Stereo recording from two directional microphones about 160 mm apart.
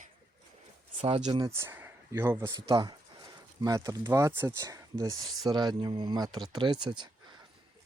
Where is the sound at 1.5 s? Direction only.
15° right (ahead or behind).